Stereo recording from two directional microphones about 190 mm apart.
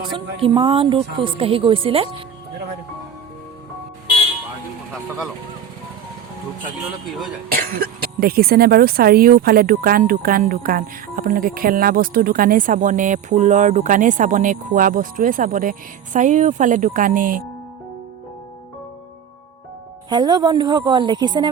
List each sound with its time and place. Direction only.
0.0 s speech: 25° right (ahead or behind)
7.7 s speech: 50° right (ahead or behind)
20.1 s speech: 20° right (ahead or behind)